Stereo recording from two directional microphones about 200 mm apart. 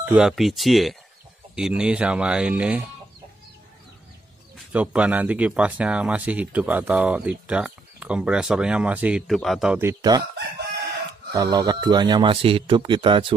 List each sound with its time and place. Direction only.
0.0 s speech: 5° right (ahead or behind)
4.6 s speech: 5° right (ahead or behind)
11.3 s speech: 20° right (ahead or behind)